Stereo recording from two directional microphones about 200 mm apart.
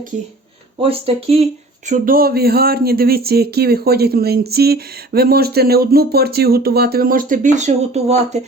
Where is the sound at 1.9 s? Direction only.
45° right (ahead or behind).